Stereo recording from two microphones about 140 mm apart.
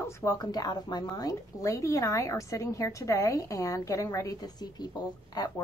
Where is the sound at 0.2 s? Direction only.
25° left (ahead or behind).